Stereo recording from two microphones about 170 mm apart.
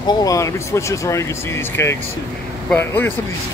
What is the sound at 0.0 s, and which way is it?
Speech, 25° left (ahead or behind).